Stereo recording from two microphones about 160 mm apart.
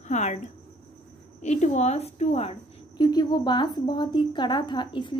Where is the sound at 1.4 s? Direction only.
45° left (ahead or behind).